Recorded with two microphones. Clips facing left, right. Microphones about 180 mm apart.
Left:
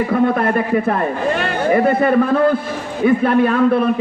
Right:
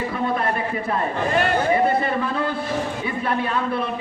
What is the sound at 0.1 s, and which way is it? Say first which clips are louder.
A man's voice: left 8 dB; 55° left (ahead or behind).